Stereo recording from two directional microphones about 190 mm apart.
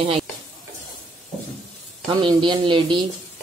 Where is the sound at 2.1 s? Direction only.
25° right (ahead or behind).